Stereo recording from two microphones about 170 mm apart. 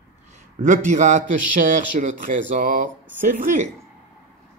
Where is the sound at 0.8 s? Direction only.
45° right (ahead or behind).